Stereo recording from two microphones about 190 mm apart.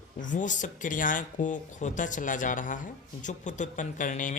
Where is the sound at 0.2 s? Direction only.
40° left (ahead or behind).